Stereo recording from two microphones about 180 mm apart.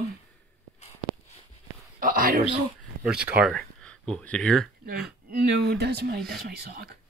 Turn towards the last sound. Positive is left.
turn(degrees=-65)  # may be behind; listen again after turning